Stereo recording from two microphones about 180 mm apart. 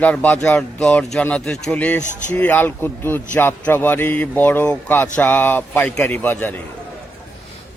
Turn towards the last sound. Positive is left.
turn(degrees=10)  # may be behind; listen again after turning